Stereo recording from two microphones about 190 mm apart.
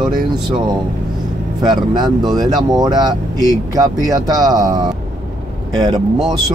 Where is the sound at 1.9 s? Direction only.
20° right (ahead or behind).